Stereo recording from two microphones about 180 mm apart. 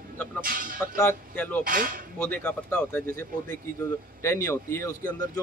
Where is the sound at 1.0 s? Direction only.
10° left (ahead or behind).